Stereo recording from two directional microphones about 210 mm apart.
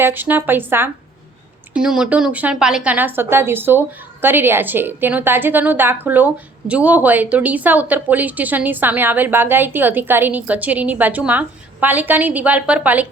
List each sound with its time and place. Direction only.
0.0 s a woman's voice: 10° right (ahead or behind)